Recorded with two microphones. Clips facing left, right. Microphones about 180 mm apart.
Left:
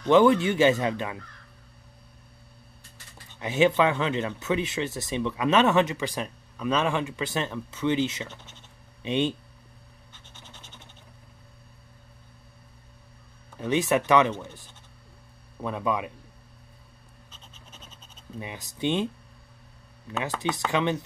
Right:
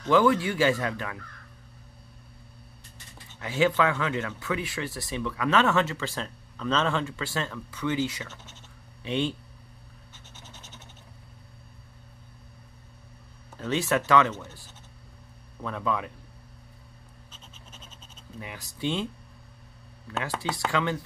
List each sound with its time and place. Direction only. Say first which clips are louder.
0.0 s speech: left 3 dB; 25° left (ahead or behind)
3.3 s speech: left 2 dB; 20° left (ahead or behind)
10.1 s scratch: even; 10° right (ahead or behind)
13.6 s speech: left 3 dB; 15° left (ahead or behind)
18.4 s speech: left 3 dB; 20° left (ahead or behind)
20.3 s speech: left 2 dB; 20° left (ahead or behind)